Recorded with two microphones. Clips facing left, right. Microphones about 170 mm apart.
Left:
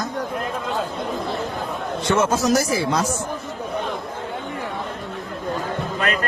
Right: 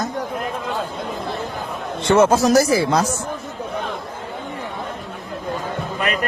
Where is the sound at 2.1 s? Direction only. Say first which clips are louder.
Right 6 dB; 30° right (ahead or behind).